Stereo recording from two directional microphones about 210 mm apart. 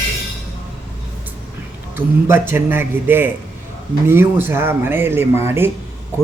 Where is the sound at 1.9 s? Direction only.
10° right (ahead or behind).